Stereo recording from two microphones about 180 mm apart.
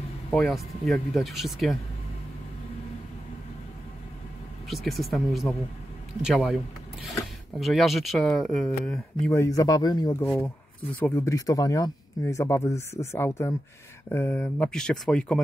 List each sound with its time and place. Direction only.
0.3 s speech: centre (ahead or behind)
4.6 s speech: centre (ahead or behind)
9.3 s speech: 20° left (ahead or behind)
10.4 s speech: 10° left (ahead or behind)